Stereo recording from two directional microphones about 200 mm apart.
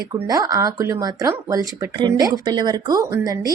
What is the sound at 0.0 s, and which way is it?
Speech, 20° right (ahead or behind).